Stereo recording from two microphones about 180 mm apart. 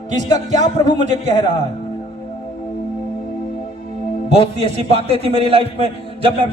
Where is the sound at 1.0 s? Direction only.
40° right (ahead or behind).